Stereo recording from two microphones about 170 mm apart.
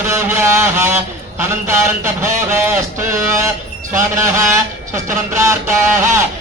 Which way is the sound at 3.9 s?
15° right (ahead or behind).